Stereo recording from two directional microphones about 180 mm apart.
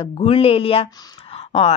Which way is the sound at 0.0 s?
30° left (ahead or behind).